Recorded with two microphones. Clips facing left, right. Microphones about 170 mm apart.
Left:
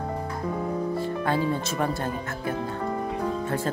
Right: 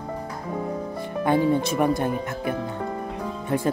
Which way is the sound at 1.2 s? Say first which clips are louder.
Right 8 dB; 20° right (ahead or behind).